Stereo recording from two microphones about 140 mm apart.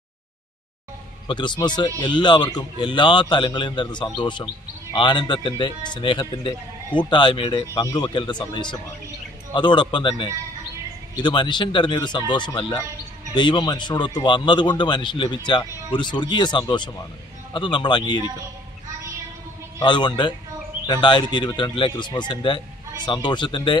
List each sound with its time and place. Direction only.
1.2 s speech: 35° left (ahead or behind)
19.8 s speech: 35° left (ahead or behind)